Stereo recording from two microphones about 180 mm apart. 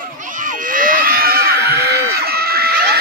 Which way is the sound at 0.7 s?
50° right (ahead or behind).